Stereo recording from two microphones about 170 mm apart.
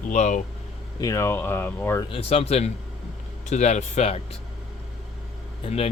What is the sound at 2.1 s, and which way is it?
Speech, 35° left (ahead or behind).